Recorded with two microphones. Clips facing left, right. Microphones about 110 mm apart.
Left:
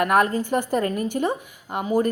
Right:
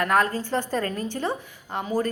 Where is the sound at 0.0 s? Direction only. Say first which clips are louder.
Left 3 dB; 20° left (ahead or behind).